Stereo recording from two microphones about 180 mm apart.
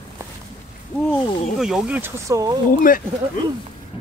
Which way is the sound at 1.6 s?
5° right (ahead or behind).